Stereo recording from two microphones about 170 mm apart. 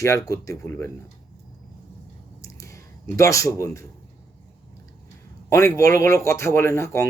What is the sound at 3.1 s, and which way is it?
Speech, 20° left (ahead or behind).